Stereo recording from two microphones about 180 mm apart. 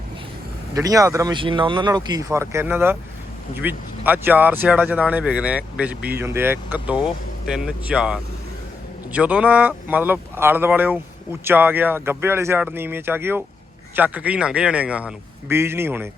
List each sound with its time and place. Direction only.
0.7 s speech: 20° right (ahead or behind)